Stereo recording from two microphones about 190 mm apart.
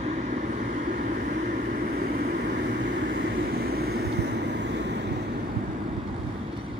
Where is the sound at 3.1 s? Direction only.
60° right (ahead or behind).